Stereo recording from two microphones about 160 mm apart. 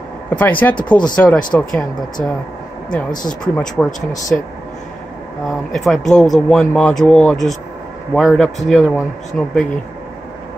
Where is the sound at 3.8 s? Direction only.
5° left (ahead or behind).